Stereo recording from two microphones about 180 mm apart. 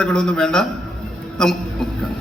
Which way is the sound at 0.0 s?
5° left (ahead or behind).